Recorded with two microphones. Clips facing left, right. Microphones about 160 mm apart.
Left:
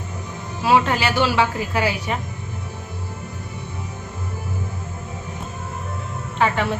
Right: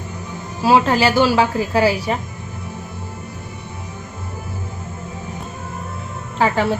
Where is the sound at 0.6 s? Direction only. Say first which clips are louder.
Right 4 dB; 35° right (ahead or behind).